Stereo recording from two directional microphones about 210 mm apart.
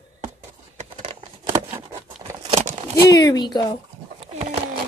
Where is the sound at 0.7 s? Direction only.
30° right (ahead or behind).